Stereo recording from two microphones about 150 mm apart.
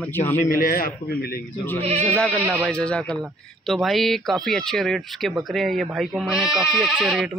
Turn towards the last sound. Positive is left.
turn(degrees=-5)  # may be behind; listen again after turning